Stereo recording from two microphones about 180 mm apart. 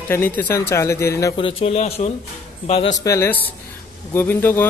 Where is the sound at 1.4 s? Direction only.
30° left (ahead or behind).